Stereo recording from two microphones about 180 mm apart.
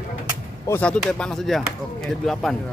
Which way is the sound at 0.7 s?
5° left (ahead or behind).